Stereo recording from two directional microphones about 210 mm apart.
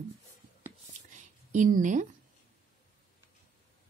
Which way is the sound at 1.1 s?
35° right (ahead or behind).